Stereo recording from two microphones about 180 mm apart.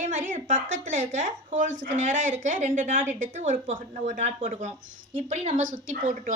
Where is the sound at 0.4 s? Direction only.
45° right (ahead or behind).